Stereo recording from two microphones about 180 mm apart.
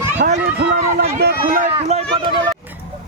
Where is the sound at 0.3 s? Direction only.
55° right (ahead or behind).